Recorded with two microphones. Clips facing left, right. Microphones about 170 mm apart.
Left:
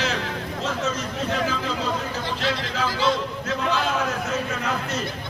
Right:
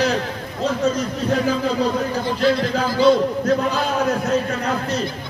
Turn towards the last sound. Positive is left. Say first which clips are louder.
# right 4 dB
turn(degrees=-40)  # may be behind; listen again after turning